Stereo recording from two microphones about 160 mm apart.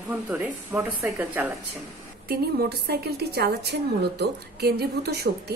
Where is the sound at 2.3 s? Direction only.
85° right.